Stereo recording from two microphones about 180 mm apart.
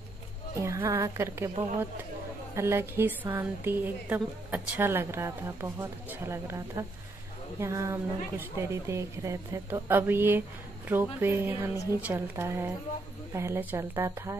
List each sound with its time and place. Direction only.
0.7 s a woman's voice: 20° right (ahead or behind)
2.5 s a woman's voice: 15° right (ahead or behind)
11.7 s a woman's voice: 20° left (ahead or behind)
12.0 s a woman's voice: 15° right (ahead or behind)